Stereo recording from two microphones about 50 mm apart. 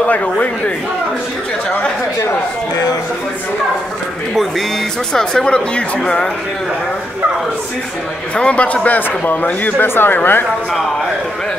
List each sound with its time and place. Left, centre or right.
0.1 s a man's voice: left
5.1 s speech: centre
8.4 s a man's voice: left
8.8 s speech: left